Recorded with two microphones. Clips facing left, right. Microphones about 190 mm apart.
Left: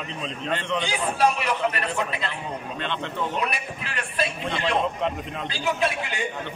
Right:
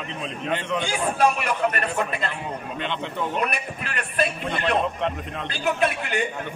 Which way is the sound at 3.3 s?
55° right (ahead or behind).